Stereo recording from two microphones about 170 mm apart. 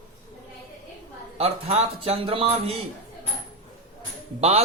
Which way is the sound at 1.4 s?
35° right (ahead or behind).